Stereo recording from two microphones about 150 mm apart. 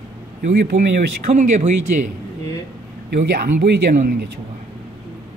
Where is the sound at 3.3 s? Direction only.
90° right.